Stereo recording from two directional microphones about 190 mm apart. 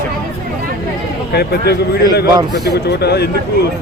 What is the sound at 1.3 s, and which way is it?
Speech, 55° left (ahead or behind).